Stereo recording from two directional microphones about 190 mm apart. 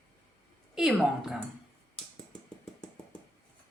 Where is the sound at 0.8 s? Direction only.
5° right (ahead or behind).